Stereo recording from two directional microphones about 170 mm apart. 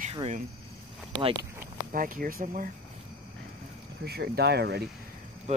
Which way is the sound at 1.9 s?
55° right (ahead or behind).